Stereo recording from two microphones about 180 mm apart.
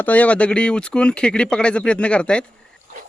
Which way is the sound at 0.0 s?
10° left (ahead or behind).